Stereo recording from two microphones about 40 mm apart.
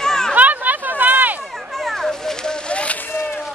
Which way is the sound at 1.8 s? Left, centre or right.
Centre.